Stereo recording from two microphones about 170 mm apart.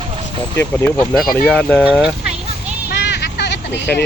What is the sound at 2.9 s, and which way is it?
Vehicle, 80° left.